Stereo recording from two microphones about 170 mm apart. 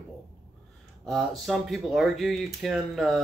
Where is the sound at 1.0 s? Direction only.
Centre (ahead or behind).